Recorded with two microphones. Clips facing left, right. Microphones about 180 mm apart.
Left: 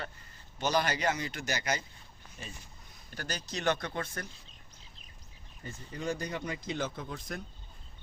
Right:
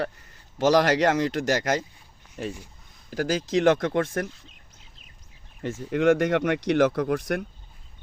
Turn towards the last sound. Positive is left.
turn(degrees=-80)